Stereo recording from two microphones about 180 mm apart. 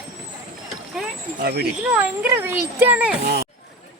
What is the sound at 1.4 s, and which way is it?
Speech, 60° right (ahead or behind).